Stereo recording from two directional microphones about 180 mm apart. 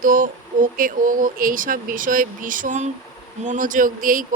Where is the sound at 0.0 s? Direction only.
50° right (ahead or behind).